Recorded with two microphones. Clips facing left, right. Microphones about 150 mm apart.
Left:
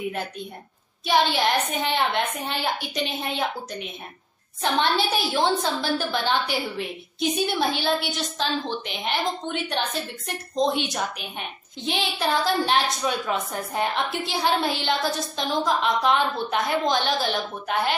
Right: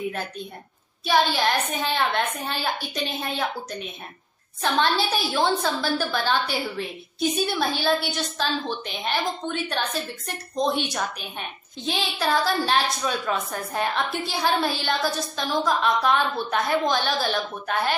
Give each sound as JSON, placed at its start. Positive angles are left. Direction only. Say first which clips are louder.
{"t": 1.0, "sound": "a woman's voice", "louder": "even", "side_deg": 20}
{"t": 4.6, "sound": "a woman's voice", "louder": "even", "side_deg": 20}